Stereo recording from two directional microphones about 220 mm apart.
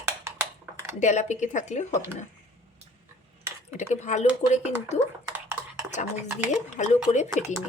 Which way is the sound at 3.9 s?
30° left (ahead or behind).